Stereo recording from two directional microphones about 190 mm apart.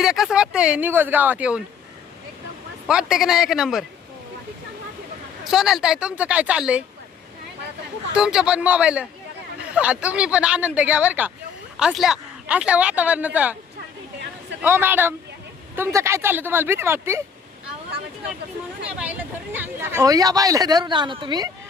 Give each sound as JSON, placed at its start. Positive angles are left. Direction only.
{"t": 0.0, "sound": "speech", "side_deg": 0}
{"t": 2.8, "sound": "speech", "side_deg": -5}
{"t": 5.5, "sound": "speech", "side_deg": 0}
{"t": 8.1, "sound": "speech", "side_deg": -5}
{"t": 14.6, "sound": "speech", "side_deg": -10}
{"t": 18.9, "sound": "speech", "side_deg": -5}